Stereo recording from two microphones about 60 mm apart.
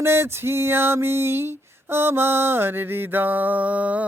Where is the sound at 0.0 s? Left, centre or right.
Right.